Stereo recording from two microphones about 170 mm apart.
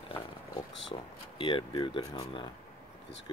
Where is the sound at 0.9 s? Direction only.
30° left (ahead or behind).